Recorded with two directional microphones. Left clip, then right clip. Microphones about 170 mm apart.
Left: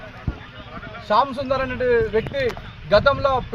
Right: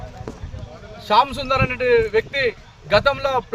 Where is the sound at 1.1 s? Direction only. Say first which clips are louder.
Right 2 dB; 35° right (ahead or behind).